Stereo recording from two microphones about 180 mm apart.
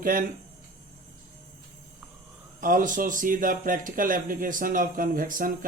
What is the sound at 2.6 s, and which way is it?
Speech, 45° right (ahead or behind).